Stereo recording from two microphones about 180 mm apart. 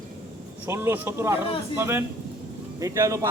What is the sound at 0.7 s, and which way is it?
A man's voice, 15° right (ahead or behind).